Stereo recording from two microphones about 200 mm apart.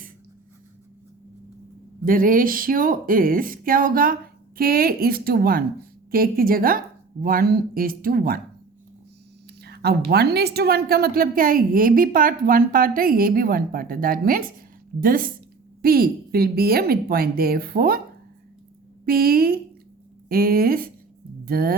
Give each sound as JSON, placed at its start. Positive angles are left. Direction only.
{"t": 2.0, "sound": "a woman's voice", "side_deg": -45}
{"t": 9.6, "sound": "a woman's voice", "side_deg": -55}
{"t": 19.0, "sound": "a woman's voice", "side_deg": -50}